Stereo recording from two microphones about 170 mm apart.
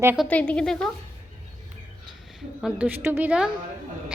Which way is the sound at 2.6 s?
10° right (ahead or behind).